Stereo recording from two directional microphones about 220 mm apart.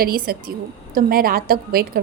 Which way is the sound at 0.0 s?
40° right (ahead or behind).